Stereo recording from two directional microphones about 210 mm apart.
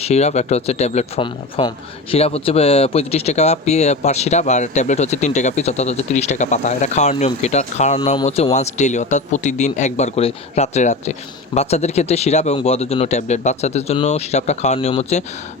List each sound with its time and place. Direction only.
0.0 s speech: 30° left (ahead or behind)